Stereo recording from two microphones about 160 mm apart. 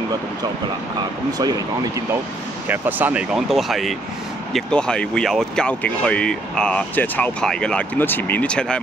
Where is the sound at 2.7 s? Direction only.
10° right (ahead or behind).